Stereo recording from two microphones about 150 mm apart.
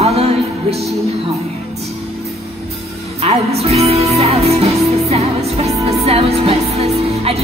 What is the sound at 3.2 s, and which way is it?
Music, 45° right (ahead or behind).